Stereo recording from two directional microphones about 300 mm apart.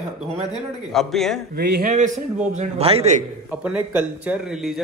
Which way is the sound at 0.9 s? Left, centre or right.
Centre.